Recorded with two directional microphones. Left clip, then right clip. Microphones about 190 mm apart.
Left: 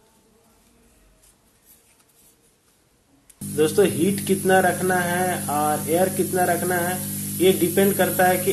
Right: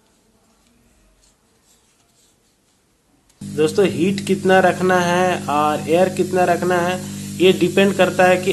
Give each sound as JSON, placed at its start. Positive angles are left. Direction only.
{"t": 3.5, "sound": "speech", "side_deg": -10}